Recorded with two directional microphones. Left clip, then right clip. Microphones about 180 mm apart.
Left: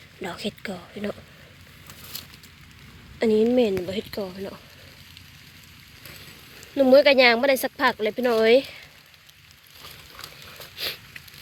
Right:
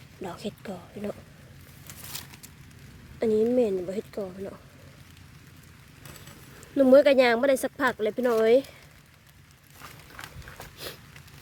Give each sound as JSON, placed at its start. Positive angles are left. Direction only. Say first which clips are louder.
{"t": 0.2, "sound": "a woman's voice", "louder": "left 5 dB", "side_deg": -5}
{"t": 3.2, "sound": "a woman's voice", "louder": "left 3 dB", "side_deg": 0}
{"t": 6.7, "sound": "speech", "louder": "left 2 dB", "side_deg": -20}